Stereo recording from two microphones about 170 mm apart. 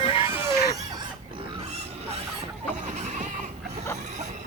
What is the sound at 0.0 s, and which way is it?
Chicken, 35° left (ahead or behind).